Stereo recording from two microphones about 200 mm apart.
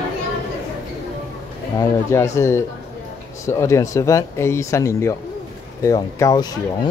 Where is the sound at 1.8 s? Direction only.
15° left (ahead or behind).